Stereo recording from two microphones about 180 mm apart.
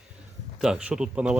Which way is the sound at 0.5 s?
5° right (ahead or behind).